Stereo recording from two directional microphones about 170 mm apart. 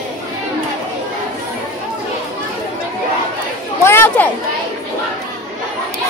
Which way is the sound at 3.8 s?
15° left (ahead or behind).